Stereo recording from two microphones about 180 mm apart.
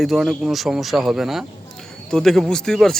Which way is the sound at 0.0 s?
Centre (ahead or behind).